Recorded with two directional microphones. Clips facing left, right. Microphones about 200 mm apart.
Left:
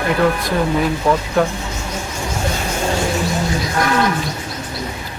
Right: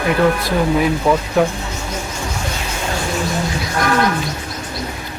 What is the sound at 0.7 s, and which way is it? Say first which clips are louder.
Speech: right 1 dB; 5° right (ahead or behind).